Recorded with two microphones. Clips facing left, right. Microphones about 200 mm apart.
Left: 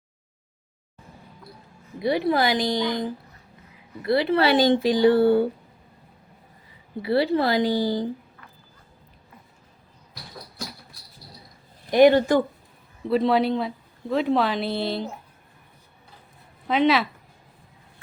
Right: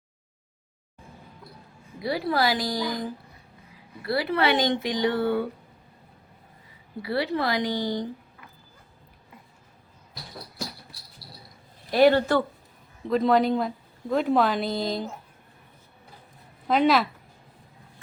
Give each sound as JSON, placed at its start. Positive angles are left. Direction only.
{"t": 2.0, "sound": "a woman's voice", "side_deg": 20}
{"t": 7.0, "sound": "a woman's voice", "side_deg": 30}
{"t": 11.9, "sound": "speech", "side_deg": 15}
{"t": 13.1, "sound": "speech", "side_deg": 5}
{"t": 16.6, "sound": "speech", "side_deg": 0}